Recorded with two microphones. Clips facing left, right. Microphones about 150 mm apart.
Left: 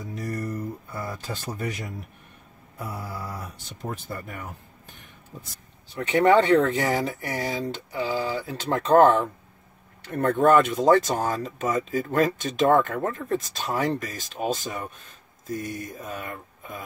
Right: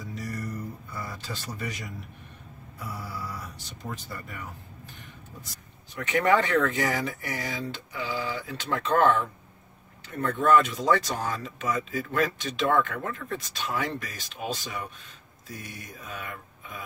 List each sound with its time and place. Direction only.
0.1 s a sound: 50° left (ahead or behind)
0.9 s speech: 50° left (ahead or behind)
2.8 s speech: 50° left (ahead or behind)
5.9 s speech: 30° left (ahead or behind)